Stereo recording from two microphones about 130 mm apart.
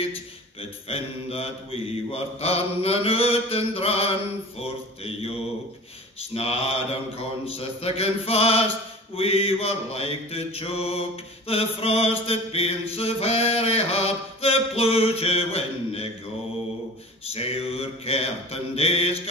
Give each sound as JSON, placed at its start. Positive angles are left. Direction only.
{"t": 0.6, "sound": "mantra", "side_deg": 50}
{"t": 6.3, "sound": "mantra", "side_deg": 50}
{"t": 17.3, "sound": "mantra", "side_deg": 50}